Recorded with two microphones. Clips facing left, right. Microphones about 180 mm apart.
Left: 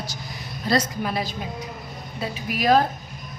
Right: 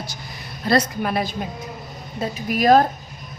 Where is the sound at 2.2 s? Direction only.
45° right (ahead or behind).